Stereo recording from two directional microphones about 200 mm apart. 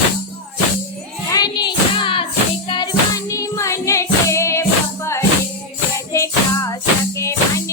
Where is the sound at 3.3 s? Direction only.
15° left (ahead or behind).